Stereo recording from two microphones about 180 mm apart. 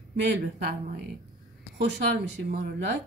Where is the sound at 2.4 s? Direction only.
75° right (ahead or behind).